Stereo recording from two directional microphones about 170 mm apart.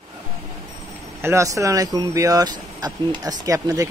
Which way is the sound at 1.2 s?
15° right (ahead or behind).